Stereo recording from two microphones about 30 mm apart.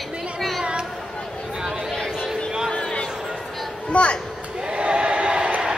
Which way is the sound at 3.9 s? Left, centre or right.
Left.